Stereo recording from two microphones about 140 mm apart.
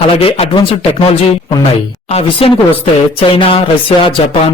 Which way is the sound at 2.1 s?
45° left (ahead or behind).